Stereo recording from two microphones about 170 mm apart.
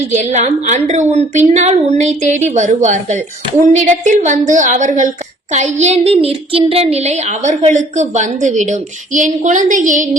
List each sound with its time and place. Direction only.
0.1 s a woman's voice: 45° right (ahead or behind)